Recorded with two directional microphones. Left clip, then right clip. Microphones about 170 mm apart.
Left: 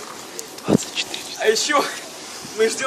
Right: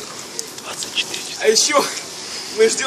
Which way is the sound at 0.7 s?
15° left (ahead or behind).